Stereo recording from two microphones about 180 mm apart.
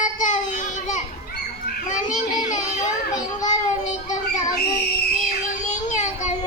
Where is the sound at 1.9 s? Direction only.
45° left (ahead or behind).